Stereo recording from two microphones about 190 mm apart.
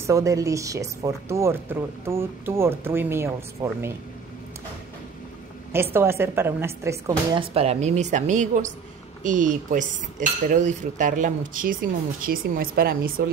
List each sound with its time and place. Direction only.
0.0 s speech: 15° right (ahead or behind)
5.7 s speech: 10° right (ahead or behind)
7.3 s speech: 30° right (ahead or behind); by 13.1 s 50° right (ahead or behind)